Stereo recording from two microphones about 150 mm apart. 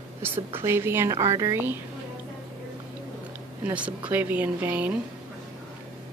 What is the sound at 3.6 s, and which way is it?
A woman's voice, 10° right (ahead or behind).